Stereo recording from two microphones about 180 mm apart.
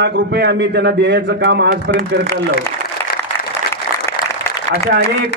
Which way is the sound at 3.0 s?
15° left (ahead or behind).